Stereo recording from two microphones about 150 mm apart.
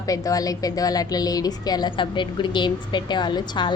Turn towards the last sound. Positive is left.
turn(degrees=30)  # may be behind; listen again after turning